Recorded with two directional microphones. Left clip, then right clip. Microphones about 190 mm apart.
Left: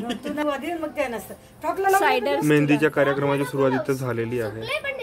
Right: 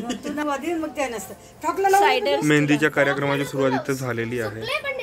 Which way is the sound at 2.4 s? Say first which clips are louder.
Even; 5° left (ahead or behind).